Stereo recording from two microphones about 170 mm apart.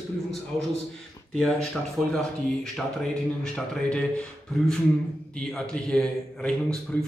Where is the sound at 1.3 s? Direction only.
Centre (ahead or behind).